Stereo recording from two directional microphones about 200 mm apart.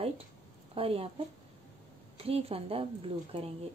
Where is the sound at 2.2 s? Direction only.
30° right (ahead or behind).